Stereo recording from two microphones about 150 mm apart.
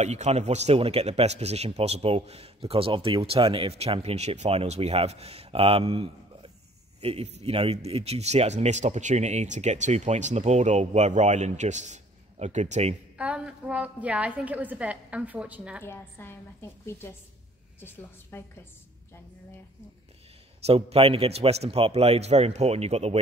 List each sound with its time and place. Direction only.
0.0 s speech: 50° right (ahead or behind)
13.2 s a woman's voice: 5° right (ahead or behind)
15.8 s a woman's voice: 15° left (ahead or behind)
20.6 s speech: 40° right (ahead or behind)